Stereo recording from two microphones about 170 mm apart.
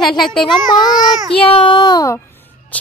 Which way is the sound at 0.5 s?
25° left (ahead or behind).